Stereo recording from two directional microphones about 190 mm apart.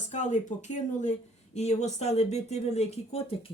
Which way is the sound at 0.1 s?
40° left (ahead or behind).